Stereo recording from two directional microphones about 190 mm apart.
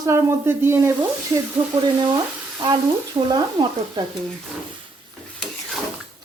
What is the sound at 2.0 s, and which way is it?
Frying, 20° right (ahead or behind).